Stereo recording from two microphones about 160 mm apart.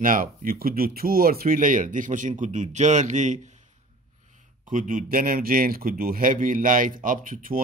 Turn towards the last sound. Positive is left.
turn(degrees=-60)  # may be behind; listen again after turning